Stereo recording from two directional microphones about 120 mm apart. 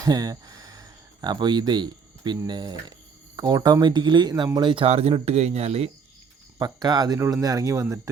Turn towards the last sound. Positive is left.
turn(degrees=-25)  # may be behind; listen again after turning